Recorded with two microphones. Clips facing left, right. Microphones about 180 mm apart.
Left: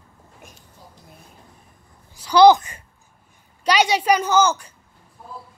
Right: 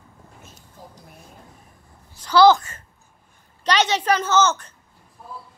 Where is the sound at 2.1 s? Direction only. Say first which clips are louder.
Left 2 dB; 15° left (ahead or behind).